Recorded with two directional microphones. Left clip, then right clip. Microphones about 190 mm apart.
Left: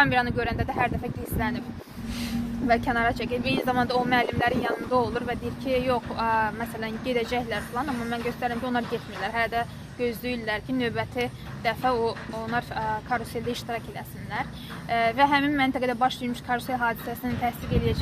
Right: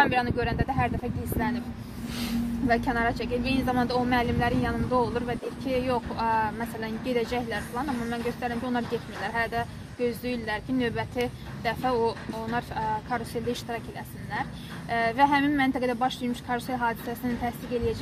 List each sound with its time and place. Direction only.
0.0 s speech: 5° left (ahead or behind)
2.0 s speech: 45° right (ahead or behind)
2.7 s speech: 5° left (ahead or behind)
7.7 s speech: 20° left (ahead or behind); by 16.9 s centre (ahead or behind)